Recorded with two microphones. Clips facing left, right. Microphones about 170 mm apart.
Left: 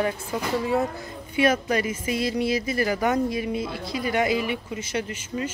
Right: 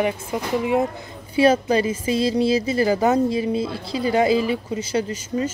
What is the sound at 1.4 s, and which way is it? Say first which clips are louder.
Speech: right 5 dB; 30° right (ahead or behind).